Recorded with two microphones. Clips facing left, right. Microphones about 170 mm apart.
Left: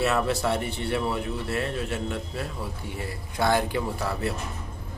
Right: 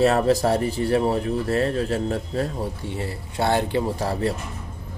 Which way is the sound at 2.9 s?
30° right (ahead or behind).